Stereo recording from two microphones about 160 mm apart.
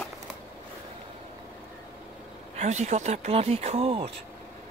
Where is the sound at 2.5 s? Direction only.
45° right (ahead or behind).